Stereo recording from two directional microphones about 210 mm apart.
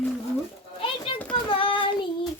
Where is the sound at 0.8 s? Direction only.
25° left (ahead or behind).